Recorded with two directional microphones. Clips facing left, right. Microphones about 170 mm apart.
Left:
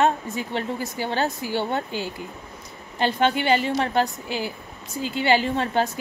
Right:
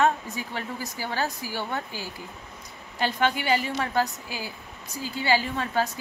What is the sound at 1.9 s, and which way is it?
Speech, 65° left (ahead or behind).